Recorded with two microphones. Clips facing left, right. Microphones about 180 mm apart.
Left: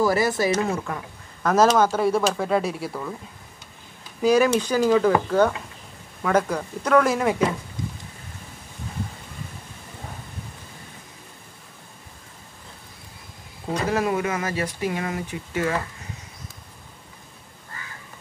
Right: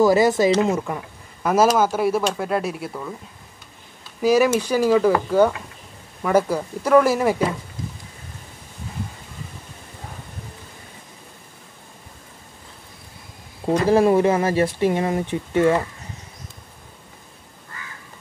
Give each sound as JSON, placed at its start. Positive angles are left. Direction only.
{"t": 0.0, "sound": "speech", "side_deg": -20}
{"t": 4.2, "sound": "speech", "side_deg": -5}
{"t": 6.2, "sound": "speech", "side_deg": -5}
{"t": 13.7, "sound": "speech", "side_deg": -30}